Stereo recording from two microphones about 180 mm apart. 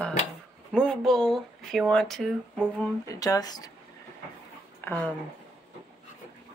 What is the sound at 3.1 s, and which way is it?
Speech, 20° left (ahead or behind).